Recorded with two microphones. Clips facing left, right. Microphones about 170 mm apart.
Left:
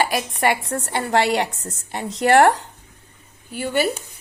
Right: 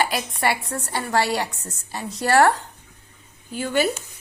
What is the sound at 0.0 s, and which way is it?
A woman's voice, 15° left (ahead or behind).